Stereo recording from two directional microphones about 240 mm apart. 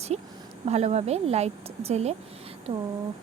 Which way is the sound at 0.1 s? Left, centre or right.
Right.